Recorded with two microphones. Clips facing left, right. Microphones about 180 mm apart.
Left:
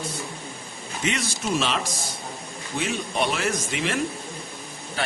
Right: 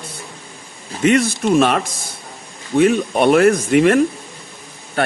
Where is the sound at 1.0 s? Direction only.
55° right (ahead or behind).